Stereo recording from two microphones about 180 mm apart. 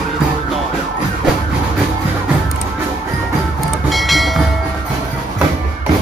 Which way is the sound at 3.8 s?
Centre (ahead or behind).